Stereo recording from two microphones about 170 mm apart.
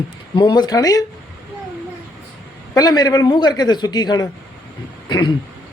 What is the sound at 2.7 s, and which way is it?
A man's voice, 20° left (ahead or behind).